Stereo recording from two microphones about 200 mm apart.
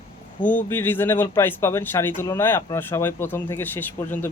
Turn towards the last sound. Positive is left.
turn(degrees=10)  # may be behind; listen again after turning